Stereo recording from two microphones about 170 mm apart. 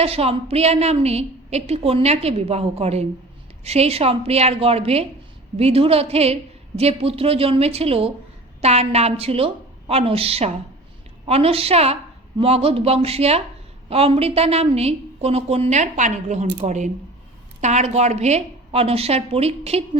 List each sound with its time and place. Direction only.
0.0 s a woman's voice: 35° right (ahead or behind)